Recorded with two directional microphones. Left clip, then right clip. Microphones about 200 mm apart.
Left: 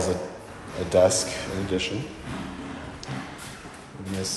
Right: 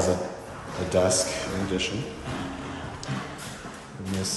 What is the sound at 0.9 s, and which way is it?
Speech, 10° right (ahead or behind).